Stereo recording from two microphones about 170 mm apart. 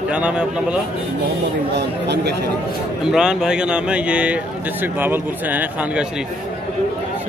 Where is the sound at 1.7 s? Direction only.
80° right.